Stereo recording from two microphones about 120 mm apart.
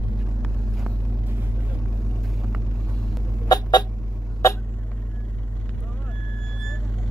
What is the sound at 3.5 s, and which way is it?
Chicken, 35° left (ahead or behind).